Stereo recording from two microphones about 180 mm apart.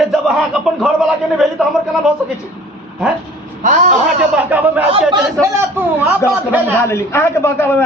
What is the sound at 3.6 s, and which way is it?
Speech, 45° right (ahead or behind).